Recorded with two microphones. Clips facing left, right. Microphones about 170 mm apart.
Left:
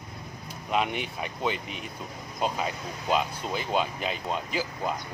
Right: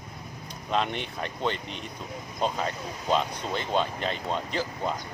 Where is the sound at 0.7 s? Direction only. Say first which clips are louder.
Even; 5° left (ahead or behind).